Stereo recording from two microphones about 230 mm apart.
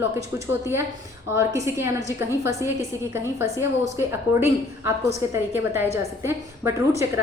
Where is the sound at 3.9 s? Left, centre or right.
Centre.